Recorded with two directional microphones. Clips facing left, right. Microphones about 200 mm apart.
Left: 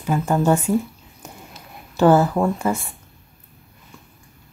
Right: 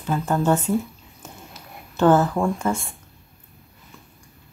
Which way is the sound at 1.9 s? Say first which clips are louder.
Left 2 dB; 10° left (ahead or behind).